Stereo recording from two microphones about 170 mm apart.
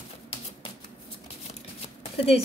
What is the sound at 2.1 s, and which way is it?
Speech, 35° left (ahead or behind).